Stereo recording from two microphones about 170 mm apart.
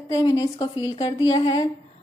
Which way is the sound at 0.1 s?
20° left (ahead or behind).